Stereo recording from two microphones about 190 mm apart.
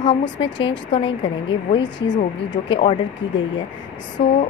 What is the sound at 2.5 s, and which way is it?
Speech, 25° left (ahead or behind).